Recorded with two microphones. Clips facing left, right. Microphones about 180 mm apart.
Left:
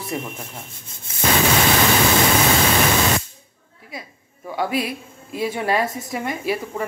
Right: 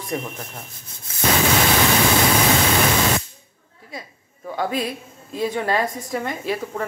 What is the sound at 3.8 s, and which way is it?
A woman's voice, 5° left (ahead or behind).